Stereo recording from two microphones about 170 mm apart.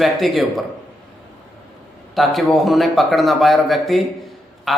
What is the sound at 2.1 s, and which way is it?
A man's voice, centre (ahead or behind).